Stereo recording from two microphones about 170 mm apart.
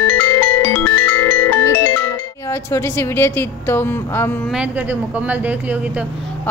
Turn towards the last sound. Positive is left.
turn(degrees=-10)  # may be behind; listen again after turning